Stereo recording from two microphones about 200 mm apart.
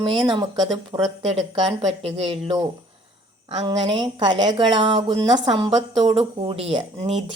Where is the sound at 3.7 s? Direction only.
25° right (ahead or behind).